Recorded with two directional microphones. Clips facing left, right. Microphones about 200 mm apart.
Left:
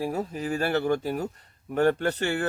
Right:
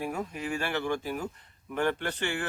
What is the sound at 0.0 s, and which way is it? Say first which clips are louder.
Speech: left 4 dB; 35° left (ahead or behind).